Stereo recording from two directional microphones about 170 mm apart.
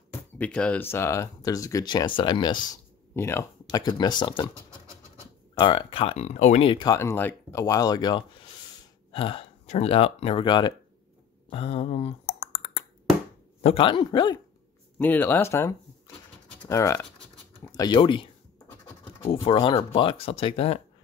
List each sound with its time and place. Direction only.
0.4 s speech: 5° left (ahead or behind); by 2.6 s 25° left (ahead or behind)
2.7 s speech: 15° left (ahead or behind)
5.5 s speech: 30° left (ahead or behind)
11.5 s a sound: 35° left (ahead or behind)
13.6 s speech: 35° left (ahead or behind)
15.0 s speech: 10° left (ahead or behind); by 18.3 s 30° left (ahead or behind)
19.4 s speech: 35° left (ahead or behind)